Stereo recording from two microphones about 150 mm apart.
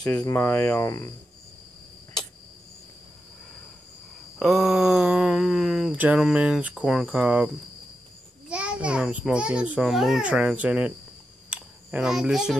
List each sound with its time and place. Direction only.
0.0 s speech: 25° left (ahead or behind)
4.4 s a child's voice: centre (ahead or behind)
11.5 s a sound: 5° right (ahead or behind)